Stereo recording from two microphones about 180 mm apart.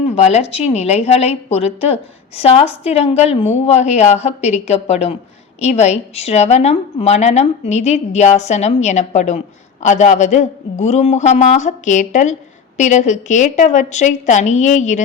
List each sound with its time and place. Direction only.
0.0 s a man's voice: 35° left (ahead or behind)